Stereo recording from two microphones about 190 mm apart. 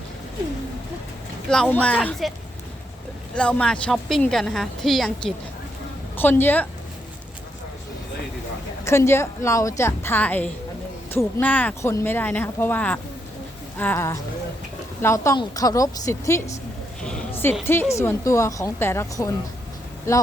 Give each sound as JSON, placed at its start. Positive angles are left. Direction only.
{"t": 1.5, "sound": "a woman's voice", "side_deg": 5}
{"t": 3.3, "sound": "a woman's voice", "side_deg": 5}
{"t": 8.8, "sound": "a woman's voice", "side_deg": 15}
{"t": 17.0, "sound": "a sound", "side_deg": 5}
{"t": 17.7, "sound": "a woman's voice", "side_deg": 15}